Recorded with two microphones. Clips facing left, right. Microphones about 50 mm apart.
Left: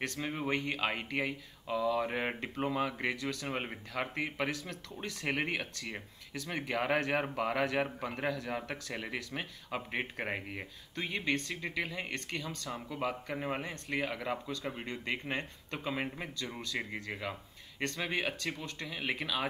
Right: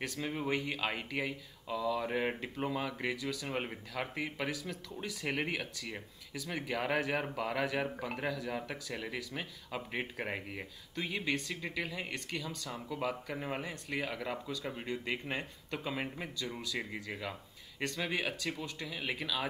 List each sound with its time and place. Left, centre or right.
0.2 s speech: centre
3.2 s speech: centre
3.4 s speech: centre
17.1 s a sound: centre
17.9 s speech: centre